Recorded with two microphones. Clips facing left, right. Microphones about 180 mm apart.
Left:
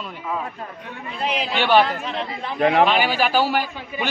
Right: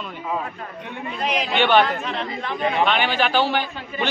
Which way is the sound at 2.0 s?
35° left (ahead or behind).